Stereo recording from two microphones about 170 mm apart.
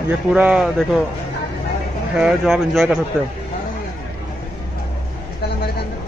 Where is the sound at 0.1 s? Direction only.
5° right (ahead or behind).